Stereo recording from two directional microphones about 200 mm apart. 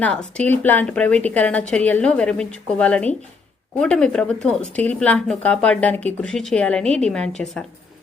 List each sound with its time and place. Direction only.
0.0 s speech: 5° left (ahead or behind)